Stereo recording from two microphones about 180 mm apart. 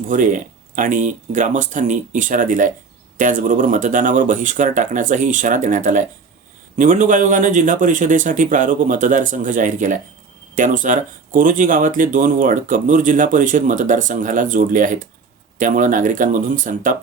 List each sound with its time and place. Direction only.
0.1 s speech: 45° right (ahead or behind)